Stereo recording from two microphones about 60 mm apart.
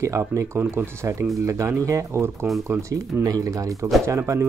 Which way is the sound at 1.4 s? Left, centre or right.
Right.